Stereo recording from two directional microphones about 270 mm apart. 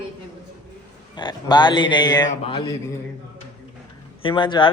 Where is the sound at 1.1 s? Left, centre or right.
Centre.